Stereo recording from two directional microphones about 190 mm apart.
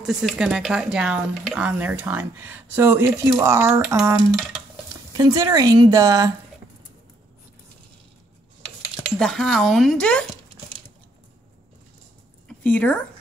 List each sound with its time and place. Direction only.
0.0 s a woman's voice: centre (ahead or behind); by 6.3 s 20° right (ahead or behind)
9.2 s speech: centre (ahead or behind)
12.4 s a sound: 10° left (ahead or behind)